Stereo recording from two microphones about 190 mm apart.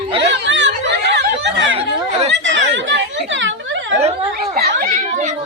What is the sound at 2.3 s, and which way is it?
Speech, 70° right (ahead or behind).